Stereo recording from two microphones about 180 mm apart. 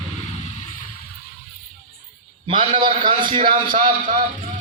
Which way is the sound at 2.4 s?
25° right (ahead or behind).